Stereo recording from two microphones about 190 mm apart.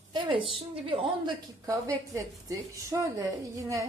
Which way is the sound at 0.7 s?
30° right (ahead or behind).